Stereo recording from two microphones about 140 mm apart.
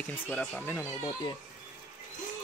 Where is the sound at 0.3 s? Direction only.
10° left (ahead or behind).